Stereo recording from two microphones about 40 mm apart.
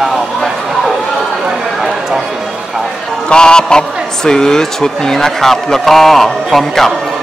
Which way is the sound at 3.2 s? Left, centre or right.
Left.